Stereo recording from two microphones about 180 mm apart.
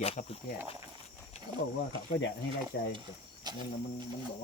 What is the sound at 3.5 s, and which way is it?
Speech, 25° right (ahead or behind).